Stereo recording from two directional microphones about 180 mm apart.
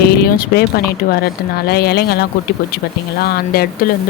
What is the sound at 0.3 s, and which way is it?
Speech, 55° left (ahead or behind).